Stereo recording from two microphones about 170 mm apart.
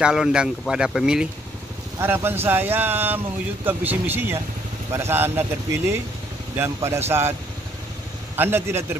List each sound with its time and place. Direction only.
0.0 s speech: 5° right (ahead or behind)
8.4 s speech: 15° right (ahead or behind)